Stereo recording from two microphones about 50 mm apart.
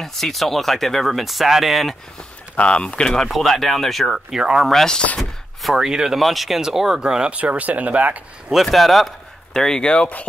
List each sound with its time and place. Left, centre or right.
0.0 s speech: centre
2.5 s speech: left
3.2 s speech: centre
4.4 s speech: centre
4.6 s speech: centre
5.6 s speech: centre
5.9 s speech: centre
6.1 s speech: centre
7.0 s speech: centre
8.6 s speech: centre